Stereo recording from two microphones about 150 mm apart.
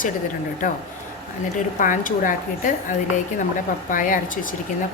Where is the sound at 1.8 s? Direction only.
60° left (ahead or behind).